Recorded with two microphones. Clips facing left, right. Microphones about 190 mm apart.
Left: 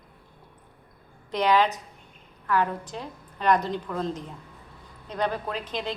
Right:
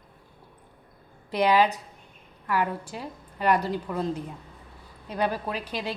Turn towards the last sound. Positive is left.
turn(degrees=-10)  # may be behind; listen again after turning